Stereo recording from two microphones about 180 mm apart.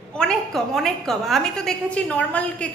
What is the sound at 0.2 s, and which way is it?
A woman's voice, 5° left (ahead or behind).